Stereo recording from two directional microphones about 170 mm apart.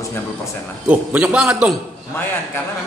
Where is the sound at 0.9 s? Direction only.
5° right (ahead or behind).